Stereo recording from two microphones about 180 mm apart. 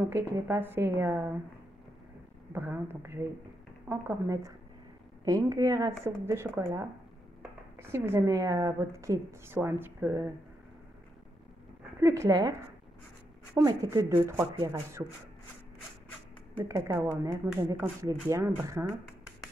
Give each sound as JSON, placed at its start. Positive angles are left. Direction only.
{"t": 0.1, "sound": "a woman's voice", "side_deg": -15}
{"t": 2.5, "sound": "a woman's voice", "side_deg": -10}
{"t": 7.8, "sound": "a woman's voice", "side_deg": -15}
{"t": 12.0, "sound": "a woman's voice", "side_deg": -15}
{"t": 16.5, "sound": "a woman's voice", "side_deg": -15}